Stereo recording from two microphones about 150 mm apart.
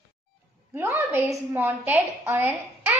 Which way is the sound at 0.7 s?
15° right (ahead or behind).